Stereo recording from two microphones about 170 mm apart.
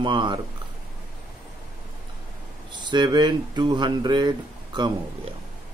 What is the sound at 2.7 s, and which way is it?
Speech, 25° right (ahead or behind).